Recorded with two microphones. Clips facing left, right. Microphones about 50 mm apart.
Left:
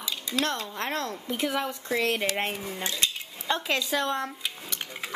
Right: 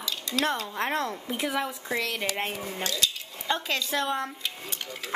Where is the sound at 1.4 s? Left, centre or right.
Centre.